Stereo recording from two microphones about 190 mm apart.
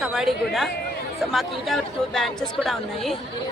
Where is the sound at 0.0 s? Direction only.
Centre (ahead or behind).